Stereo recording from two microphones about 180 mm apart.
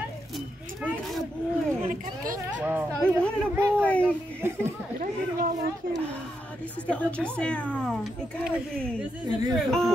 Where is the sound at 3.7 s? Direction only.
5° left (ahead or behind).